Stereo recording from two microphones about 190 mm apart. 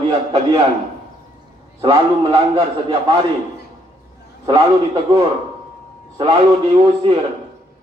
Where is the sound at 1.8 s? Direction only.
35° right (ahead or behind).